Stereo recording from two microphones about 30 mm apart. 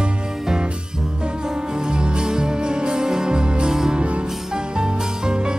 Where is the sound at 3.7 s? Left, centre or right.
Centre.